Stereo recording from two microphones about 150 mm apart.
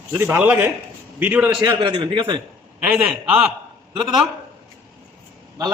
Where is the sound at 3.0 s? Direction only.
5° right (ahead or behind).